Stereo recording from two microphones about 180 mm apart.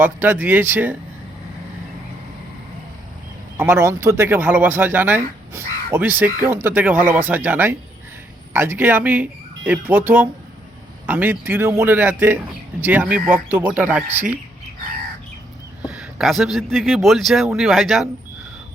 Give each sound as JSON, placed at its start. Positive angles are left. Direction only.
{"t": 0.0, "sound": "speech", "side_deg": -10}
{"t": 3.6, "sound": "speech", "side_deg": -15}
{"t": 15.9, "sound": "speech", "side_deg": -5}